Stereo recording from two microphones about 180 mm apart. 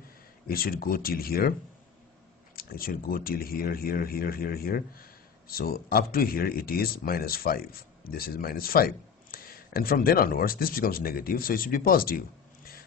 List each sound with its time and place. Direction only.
0.5 s speech: 55° left (ahead or behind)
2.5 s speech: 55° left (ahead or behind)